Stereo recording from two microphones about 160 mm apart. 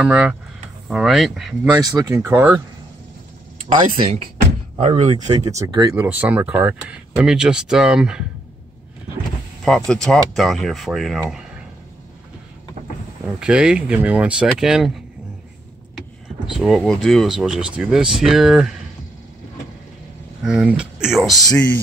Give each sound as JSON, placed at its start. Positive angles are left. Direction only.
{"t": 0.0, "sound": "speech", "side_deg": -5}
{"t": 1.7, "sound": "speech", "side_deg": -25}
{"t": 3.6, "sound": "speech", "side_deg": -40}
{"t": 5.6, "sound": "speech", "side_deg": -25}
{"t": 6.0, "sound": "speech", "side_deg": -10}
{"t": 9.8, "sound": "speech", "side_deg": 5}
{"t": 13.4, "sound": "speech", "side_deg": -5}
{"t": 16.5, "sound": "speech", "side_deg": 0}
{"t": 20.4, "sound": "speech", "side_deg": -5}